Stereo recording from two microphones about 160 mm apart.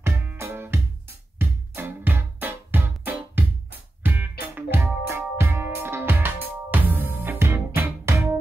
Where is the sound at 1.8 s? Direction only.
10° right (ahead or behind).